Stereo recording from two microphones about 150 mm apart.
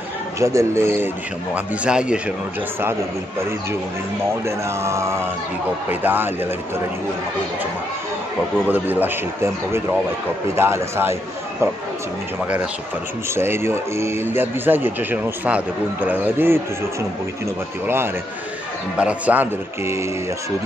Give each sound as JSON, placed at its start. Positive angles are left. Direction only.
{"t": 0.4, "sound": "a man's voice", "side_deg": -20}
{"t": 4.5, "sound": "a man's voice", "side_deg": -20}
{"t": 8.6, "sound": "a man's voice", "side_deg": -10}
{"t": 13.3, "sound": "a man's voice", "side_deg": -15}
{"t": 17.8, "sound": "a man's voice", "side_deg": -15}